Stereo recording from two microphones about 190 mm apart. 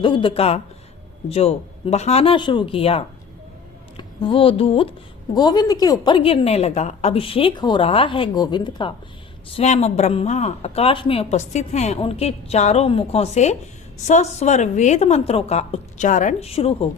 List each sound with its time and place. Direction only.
0.0 s a woman's voice: 25° left (ahead or behind)